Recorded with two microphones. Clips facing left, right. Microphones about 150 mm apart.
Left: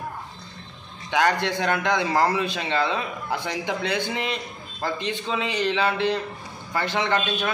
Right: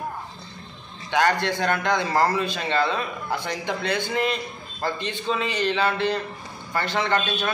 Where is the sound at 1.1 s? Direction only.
10° left (ahead or behind).